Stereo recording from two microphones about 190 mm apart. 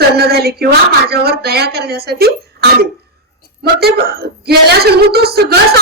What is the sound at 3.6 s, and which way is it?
A woman's voice, 55° right (ahead or behind).